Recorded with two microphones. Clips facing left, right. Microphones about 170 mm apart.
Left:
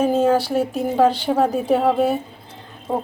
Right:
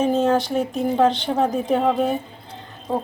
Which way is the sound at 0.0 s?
10° left (ahead or behind).